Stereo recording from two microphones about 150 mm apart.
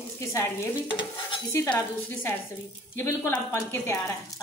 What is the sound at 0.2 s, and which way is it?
Stir, 20° left (ahead or behind).